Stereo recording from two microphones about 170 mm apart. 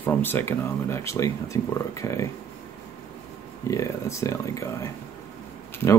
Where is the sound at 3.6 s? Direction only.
15° left (ahead or behind).